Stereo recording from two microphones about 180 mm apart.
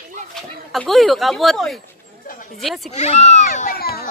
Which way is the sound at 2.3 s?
50° left (ahead or behind).